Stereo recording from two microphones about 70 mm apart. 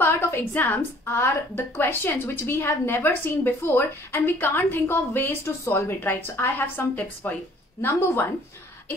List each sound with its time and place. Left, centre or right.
0.0 s a woman's voice: left